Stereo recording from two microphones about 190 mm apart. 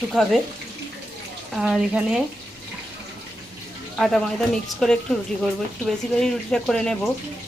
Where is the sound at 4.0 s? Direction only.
Centre (ahead or behind).